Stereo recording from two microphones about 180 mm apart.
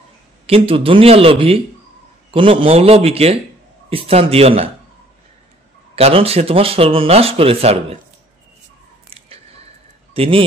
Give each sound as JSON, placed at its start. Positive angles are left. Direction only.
{"t": 0.5, "sound": "speech", "side_deg": -30}
{"t": 5.9, "sound": "speech", "side_deg": -35}
{"t": 9.1, "sound": "a sound", "side_deg": -35}
{"t": 10.1, "sound": "speech", "side_deg": -30}